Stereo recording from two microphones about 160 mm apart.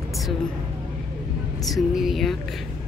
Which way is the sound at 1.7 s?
Centre (ahead or behind).